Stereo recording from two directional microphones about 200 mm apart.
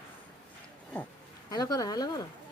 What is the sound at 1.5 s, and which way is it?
Speech, 20° left (ahead or behind).